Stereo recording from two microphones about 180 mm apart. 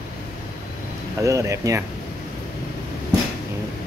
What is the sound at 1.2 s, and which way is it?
Speech, 15° right (ahead or behind).